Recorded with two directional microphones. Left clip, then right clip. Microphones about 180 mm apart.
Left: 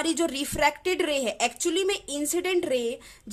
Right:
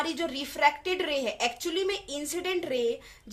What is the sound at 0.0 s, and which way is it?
A woman's voice, 50° left (ahead or behind).